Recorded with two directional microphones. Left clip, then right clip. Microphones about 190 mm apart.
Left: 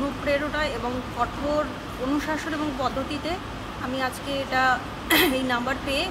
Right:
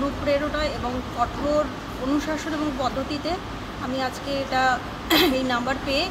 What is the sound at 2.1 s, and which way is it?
A woman's voice, 5° left (ahead or behind).